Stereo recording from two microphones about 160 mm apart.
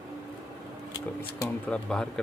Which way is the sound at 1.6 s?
5° left (ahead or behind).